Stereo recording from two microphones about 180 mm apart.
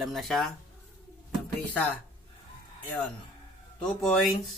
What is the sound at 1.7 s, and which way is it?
Speech, 5° left (ahead or behind).